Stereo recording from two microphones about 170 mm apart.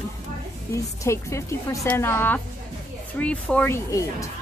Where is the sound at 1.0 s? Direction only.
15° left (ahead or behind).